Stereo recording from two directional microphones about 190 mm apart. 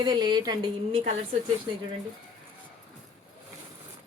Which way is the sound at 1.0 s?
35° right (ahead or behind).